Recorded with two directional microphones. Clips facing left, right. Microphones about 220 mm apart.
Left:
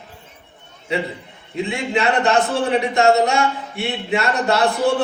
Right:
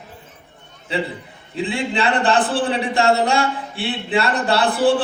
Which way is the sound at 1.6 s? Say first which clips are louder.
Left 1 dB; 30° right (ahead or behind).